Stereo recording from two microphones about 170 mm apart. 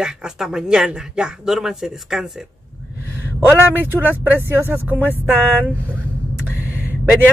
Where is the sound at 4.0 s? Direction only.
10° right (ahead or behind).